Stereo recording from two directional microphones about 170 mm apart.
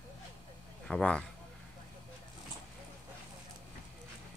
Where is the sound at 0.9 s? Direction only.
5° left (ahead or behind).